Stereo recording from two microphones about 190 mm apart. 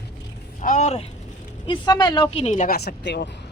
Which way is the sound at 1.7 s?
20° left (ahead or behind).